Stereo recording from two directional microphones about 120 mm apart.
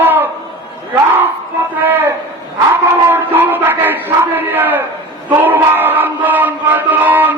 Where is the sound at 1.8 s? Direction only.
15° right (ahead or behind).